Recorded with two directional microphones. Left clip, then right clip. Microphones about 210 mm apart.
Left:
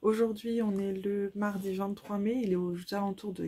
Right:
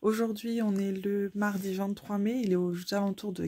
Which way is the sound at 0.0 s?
35° right (ahead or behind).